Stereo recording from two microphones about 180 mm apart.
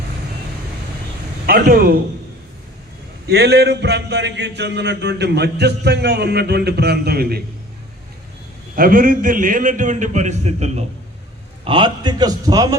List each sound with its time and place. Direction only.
1.5 s speech: 55° right (ahead or behind)
3.2 s a man's voice: 65° right (ahead or behind)
8.7 s a man's voice: 50° right (ahead or behind); by 12.6 s 20° right (ahead or behind)